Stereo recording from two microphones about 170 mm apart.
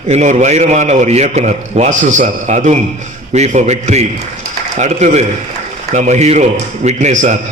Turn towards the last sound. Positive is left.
turn(degrees=-45)  # may be behind; listen again after turning